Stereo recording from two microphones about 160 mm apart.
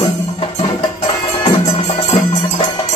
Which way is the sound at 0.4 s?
30° left (ahead or behind).